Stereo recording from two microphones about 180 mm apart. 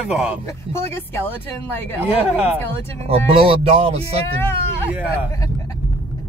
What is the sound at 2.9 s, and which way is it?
Speech, 35° right (ahead or behind).